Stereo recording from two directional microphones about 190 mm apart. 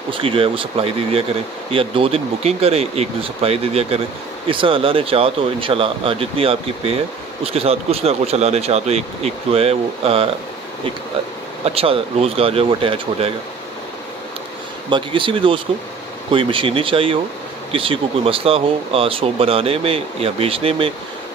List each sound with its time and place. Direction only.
0.1 s speech: 30° right (ahead or behind)
11.6 s speech: 30° right (ahead or behind)
14.9 s speech: 25° right (ahead or behind)